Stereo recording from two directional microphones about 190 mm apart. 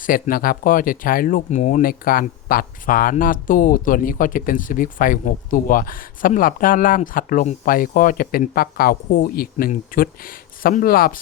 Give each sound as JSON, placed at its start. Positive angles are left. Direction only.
{"t": 0.0, "sound": "speech", "side_deg": 50}